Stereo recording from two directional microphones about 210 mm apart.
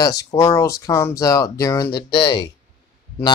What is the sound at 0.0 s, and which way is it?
Speech, 15° left (ahead or behind).